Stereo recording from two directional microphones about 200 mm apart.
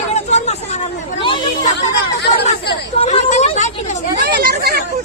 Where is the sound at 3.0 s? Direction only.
35° left (ahead or behind).